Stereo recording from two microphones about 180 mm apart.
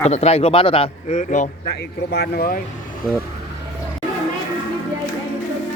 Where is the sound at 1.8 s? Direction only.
60° left (ahead or behind).